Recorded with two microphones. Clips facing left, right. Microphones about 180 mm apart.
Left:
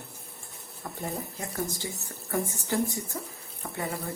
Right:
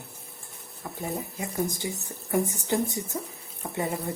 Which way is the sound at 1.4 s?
15° right (ahead or behind).